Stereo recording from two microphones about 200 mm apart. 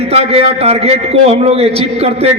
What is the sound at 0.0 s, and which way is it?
A man's voice, 30° right (ahead or behind).